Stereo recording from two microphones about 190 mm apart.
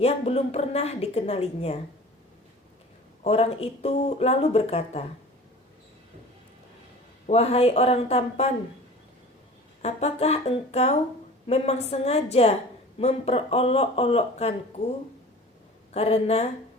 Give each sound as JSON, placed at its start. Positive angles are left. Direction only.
{"t": 0.0, "sound": "a woman's voice", "side_deg": 35}
{"t": 3.2, "sound": "a woman's voice", "side_deg": 30}
{"t": 7.3, "sound": "a woman's voice", "side_deg": 35}
{"t": 9.8, "sound": "a woman's voice", "side_deg": 35}
{"t": 15.9, "sound": "a woman's voice", "side_deg": 35}